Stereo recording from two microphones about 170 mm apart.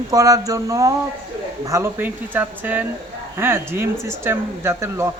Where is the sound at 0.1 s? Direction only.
20° right (ahead or behind).